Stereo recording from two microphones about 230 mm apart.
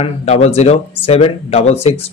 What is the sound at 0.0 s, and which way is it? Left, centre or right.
Speech, left.